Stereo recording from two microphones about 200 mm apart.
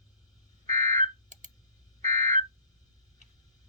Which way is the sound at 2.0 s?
35° right (ahead or behind).